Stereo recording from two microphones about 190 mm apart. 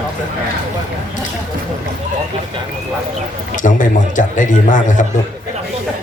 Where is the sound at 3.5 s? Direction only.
40° left (ahead or behind).